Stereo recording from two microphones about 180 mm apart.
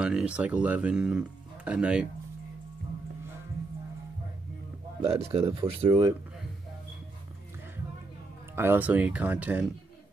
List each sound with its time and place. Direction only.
0.0 s speech: 5° right (ahead or behind)
5.0 s speech: 35° right (ahead or behind)
8.5 s speech: 10° right (ahead or behind)